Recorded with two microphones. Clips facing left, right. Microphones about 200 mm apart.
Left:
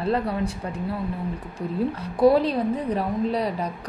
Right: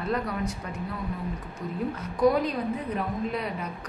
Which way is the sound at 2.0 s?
30° left (ahead or behind).